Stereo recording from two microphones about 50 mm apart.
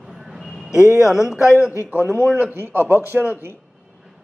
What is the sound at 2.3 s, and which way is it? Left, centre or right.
A man's voice, right.